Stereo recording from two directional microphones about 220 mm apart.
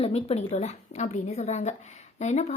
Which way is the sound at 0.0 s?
25° left (ahead or behind).